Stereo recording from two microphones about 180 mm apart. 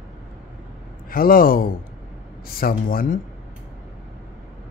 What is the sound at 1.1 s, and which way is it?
Speech, 55° left (ahead or behind).